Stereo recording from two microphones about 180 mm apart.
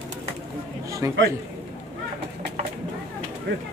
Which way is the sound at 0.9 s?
15° right (ahead or behind).